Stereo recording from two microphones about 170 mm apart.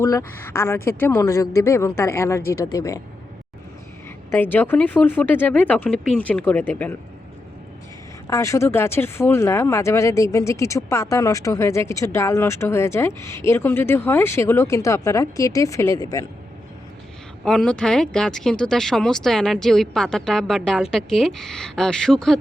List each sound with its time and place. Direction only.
0.0 s speech: 20° left (ahead or behind)
4.3 s speech: 10° left (ahead or behind)
8.3 s speech: 20° left (ahead or behind)
17.4 s speech: 5° left (ahead or behind)